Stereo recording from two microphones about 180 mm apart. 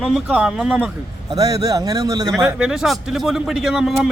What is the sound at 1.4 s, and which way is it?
Speech, 20° right (ahead or behind).